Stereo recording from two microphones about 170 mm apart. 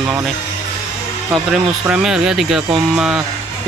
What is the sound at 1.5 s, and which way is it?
Speech, 5° right (ahead or behind).